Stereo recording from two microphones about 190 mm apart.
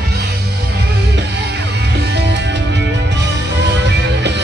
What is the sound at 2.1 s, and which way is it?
Music, 65° right (ahead or behind).